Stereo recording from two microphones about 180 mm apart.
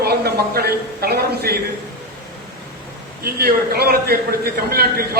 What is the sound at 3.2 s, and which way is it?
Speech, 60° right (ahead or behind).